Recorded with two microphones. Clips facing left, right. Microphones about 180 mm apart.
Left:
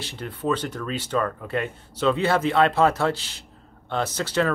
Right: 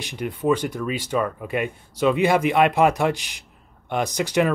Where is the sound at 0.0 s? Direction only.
15° right (ahead or behind).